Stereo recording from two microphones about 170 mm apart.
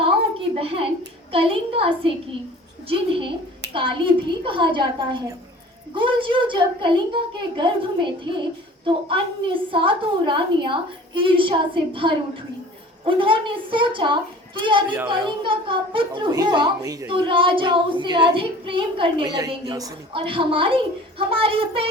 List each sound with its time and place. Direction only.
0.5 s a sound: 35° right (ahead or behind)
1.3 s speech: 30° right (ahead or behind)
2.9 s a child's voice: 30° right (ahead or behind)
17.1 s speech: 30° right (ahead or behind)